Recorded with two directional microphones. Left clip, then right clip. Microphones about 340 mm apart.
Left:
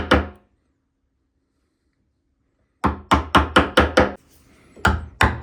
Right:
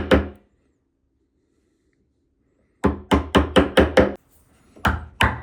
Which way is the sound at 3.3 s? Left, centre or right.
Centre.